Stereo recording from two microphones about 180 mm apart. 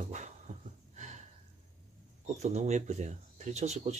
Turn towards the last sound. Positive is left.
turn(degrees=-40)  # may be behind; listen again after turning